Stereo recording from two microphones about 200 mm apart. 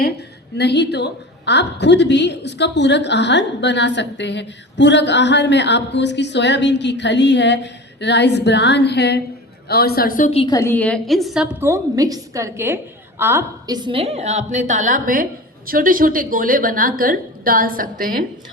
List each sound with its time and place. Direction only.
0.0 s a woman's voice: 55° left (ahead or behind)
10.3 s a woman's voice: 20° left (ahead or behind); by 11.4 s centre (ahead or behind)
11.6 s a woman's voice: 15° right (ahead or behind); by 18.3 s 45° right (ahead or behind)